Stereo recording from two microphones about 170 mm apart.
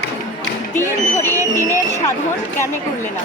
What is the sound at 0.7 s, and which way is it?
Speech, 15° left (ahead or behind).